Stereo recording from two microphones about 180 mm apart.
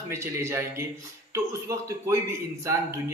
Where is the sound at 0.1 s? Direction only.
15° right (ahead or behind).